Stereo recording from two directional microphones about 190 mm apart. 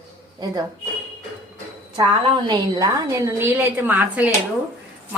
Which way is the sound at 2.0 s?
20° right (ahead or behind).